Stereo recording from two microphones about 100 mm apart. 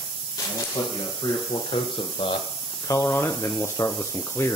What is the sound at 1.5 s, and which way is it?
Speech, 60° left (ahead or behind).